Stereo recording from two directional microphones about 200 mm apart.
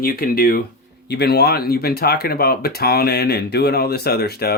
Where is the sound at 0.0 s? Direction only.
50° left (ahead or behind).